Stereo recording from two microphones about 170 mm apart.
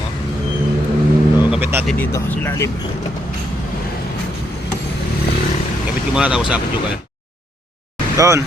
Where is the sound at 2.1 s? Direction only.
15° left (ahead or behind).